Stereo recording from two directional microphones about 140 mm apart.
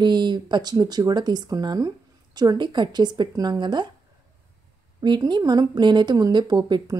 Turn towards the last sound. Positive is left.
turn(degrees=-30)  # may be behind; listen again after turning